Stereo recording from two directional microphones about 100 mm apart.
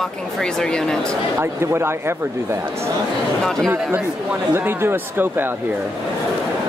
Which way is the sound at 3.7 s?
20° right (ahead or behind).